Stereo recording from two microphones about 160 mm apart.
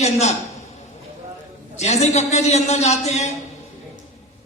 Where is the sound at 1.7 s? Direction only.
45° left (ahead or behind).